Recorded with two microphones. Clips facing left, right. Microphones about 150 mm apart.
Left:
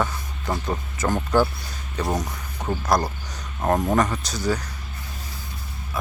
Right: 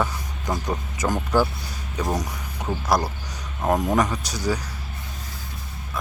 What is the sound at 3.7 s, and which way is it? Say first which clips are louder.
Speech: even; 10° right (ahead or behind).